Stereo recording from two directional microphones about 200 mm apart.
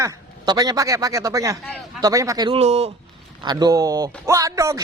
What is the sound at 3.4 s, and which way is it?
Speech, 20° right (ahead or behind).